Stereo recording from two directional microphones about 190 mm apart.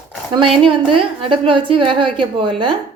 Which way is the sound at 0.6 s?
25° right (ahead or behind).